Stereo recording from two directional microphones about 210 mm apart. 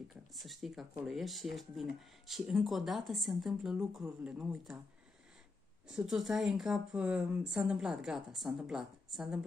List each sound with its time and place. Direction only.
0.1 s speech: centre (ahead or behind)
5.9 s speech: centre (ahead or behind)